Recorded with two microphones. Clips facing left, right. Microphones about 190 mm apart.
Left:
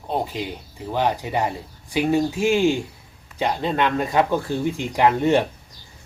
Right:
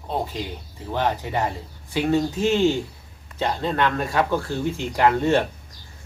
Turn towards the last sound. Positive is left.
turn(degrees=15)  # may be behind; listen again after turning